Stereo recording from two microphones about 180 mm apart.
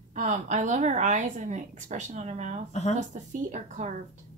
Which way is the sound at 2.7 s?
40° left (ahead or behind).